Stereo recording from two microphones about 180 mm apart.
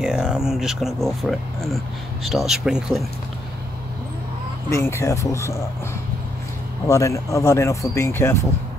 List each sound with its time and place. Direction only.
0.0 s speech: 5° right (ahead or behind)
4.6 s speech: 15° left (ahead or behind)
6.9 s speech: 15° left (ahead or behind)